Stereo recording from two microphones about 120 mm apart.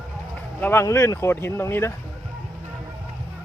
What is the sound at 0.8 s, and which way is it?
Speech, 25° left (ahead or behind).